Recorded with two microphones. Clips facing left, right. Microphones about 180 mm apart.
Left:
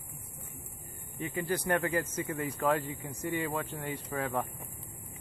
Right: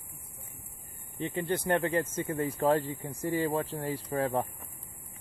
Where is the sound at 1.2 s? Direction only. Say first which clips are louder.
Right 2 dB; 25° right (ahead or behind).